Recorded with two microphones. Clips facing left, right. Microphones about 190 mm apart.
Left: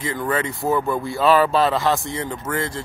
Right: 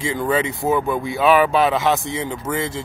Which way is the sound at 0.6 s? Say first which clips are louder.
Right 1 dB; centre (ahead or behind).